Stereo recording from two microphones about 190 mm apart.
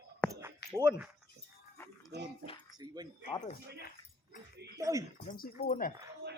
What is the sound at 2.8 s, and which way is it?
Speech, 20° right (ahead or behind).